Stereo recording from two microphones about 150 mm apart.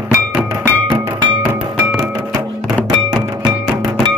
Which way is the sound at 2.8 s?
30° right (ahead or behind).